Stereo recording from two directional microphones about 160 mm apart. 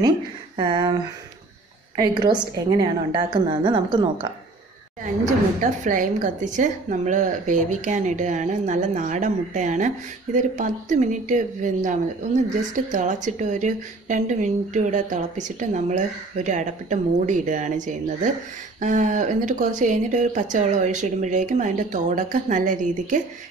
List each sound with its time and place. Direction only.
0.6 s a woman's voice: 30° right (ahead or behind)
2.0 s a woman's voice: 25° right (ahead or behind)
5.6 s speech: 55° right (ahead or behind)